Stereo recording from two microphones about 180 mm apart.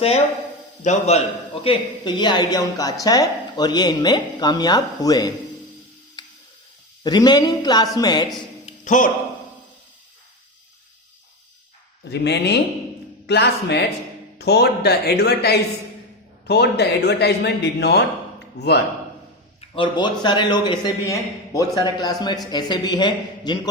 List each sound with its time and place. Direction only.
0.9 s a man's voice: 35° left (ahead or behind)
1.6 s speech: 25° left (ahead or behind)
7.0 s speech: 25° left (ahead or behind)
8.6 s a sound: 45° left (ahead or behind)
12.1 s a man's voice: 65° left (ahead or behind)
19.7 s speech: 25° left (ahead or behind)